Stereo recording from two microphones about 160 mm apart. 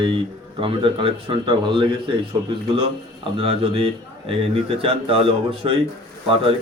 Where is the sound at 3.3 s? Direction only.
40° right (ahead or behind).